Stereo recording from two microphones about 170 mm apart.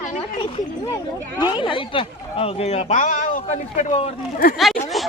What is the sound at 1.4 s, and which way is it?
Speech, 25° left (ahead or behind).